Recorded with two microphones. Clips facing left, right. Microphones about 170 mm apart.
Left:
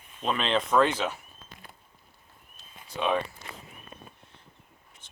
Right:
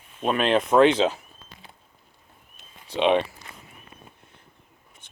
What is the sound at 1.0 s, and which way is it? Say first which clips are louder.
Speech: right 8 dB; 25° right (ahead or behind).